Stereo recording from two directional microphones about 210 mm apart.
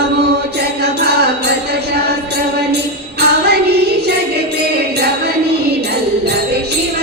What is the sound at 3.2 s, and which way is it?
Music, 50° right (ahead or behind).